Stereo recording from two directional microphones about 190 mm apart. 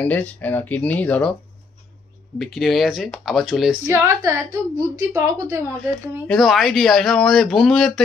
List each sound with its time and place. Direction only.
0.0 s speech: 10° left (ahead or behind)
2.3 s speech: centre (ahead or behind)
3.9 s a woman's voice: 15° right (ahead or behind)
6.2 s speech: centre (ahead or behind)